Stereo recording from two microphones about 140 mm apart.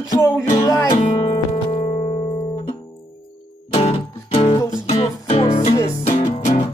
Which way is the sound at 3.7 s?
45° left (ahead or behind).